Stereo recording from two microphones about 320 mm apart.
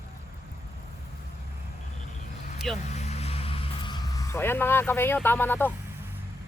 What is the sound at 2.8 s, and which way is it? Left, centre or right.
Vehicle, left.